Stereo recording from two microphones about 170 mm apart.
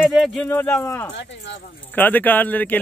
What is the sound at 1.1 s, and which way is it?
Speech, 90° left.